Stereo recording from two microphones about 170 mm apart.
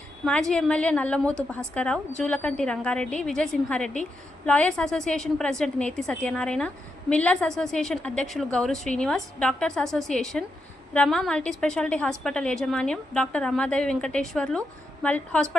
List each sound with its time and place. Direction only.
0.3 s a woman's voice: 5° left (ahead or behind)